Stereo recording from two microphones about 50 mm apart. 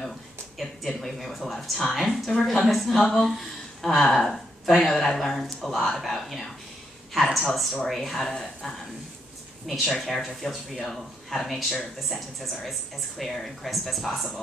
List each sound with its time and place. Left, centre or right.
0.6 s speech: centre